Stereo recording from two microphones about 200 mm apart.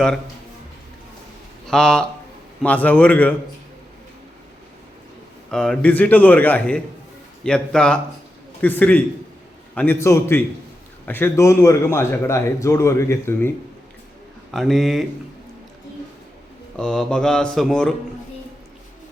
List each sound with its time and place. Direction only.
1.6 s a man's voice: 5° left (ahead or behind)
5.5 s a man's voice: 5° left (ahead or behind)
14.5 s speech: centre (ahead or behind)
16.7 s speech: 5° left (ahead or behind)